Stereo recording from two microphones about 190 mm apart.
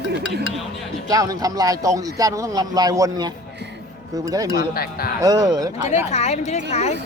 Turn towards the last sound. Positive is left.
turn(degrees=35)  # may be behind; listen again after turning